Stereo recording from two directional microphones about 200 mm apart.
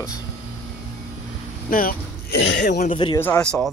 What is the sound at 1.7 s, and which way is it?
Speech, 45° left (ahead or behind).